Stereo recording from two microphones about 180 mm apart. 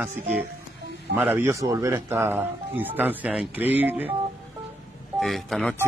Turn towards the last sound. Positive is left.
turn(degrees=0)  # may be behind; listen again after turning